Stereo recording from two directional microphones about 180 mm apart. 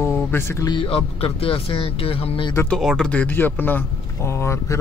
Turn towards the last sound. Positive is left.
turn(degrees=15)  # may be behind; listen again after turning